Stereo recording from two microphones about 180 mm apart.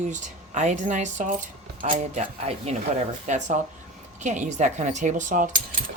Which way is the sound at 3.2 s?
40° right (ahead or behind).